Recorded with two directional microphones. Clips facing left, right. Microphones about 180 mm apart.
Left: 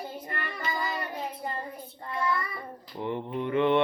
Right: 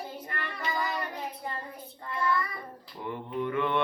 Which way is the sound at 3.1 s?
25° left (ahead or behind).